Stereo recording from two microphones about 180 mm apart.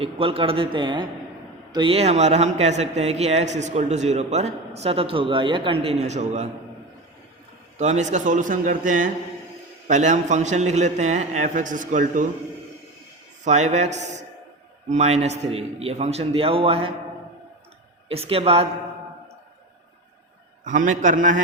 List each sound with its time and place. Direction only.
0.0 s a man's voice: 30° right (ahead or behind)
7.8 s a man's voice: 40° right (ahead or behind)
13.4 s a man's voice: 40° right (ahead or behind)
18.1 s a man's voice: 30° right (ahead or behind)
20.7 s a man's voice: 45° right (ahead or behind)